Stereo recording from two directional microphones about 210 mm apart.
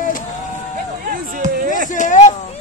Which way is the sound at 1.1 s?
40° right (ahead or behind).